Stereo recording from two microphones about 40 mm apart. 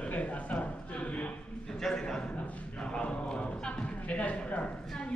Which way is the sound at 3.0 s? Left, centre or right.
Left.